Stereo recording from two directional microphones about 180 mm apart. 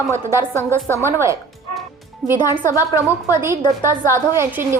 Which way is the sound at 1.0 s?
15° right (ahead or behind).